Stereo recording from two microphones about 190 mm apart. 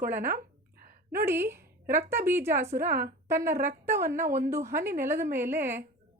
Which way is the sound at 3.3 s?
15° right (ahead or behind).